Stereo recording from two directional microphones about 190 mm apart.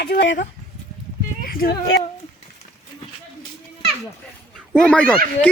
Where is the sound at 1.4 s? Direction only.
50° left (ahead or behind).